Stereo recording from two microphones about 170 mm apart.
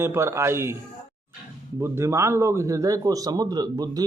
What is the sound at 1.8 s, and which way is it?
A man's voice, 15° right (ahead or behind).